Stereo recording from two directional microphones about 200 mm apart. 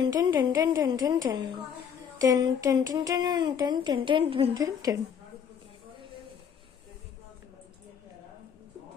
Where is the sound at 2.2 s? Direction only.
20° right (ahead or behind).